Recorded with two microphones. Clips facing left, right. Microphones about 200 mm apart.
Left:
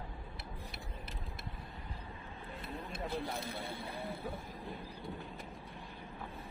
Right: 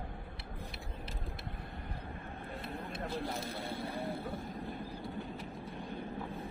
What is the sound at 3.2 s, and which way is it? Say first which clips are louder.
Speech: right 1 dB; 60° right (ahead or behind).